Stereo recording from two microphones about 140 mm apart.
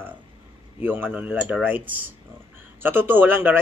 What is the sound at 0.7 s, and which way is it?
Speech, 15° right (ahead or behind).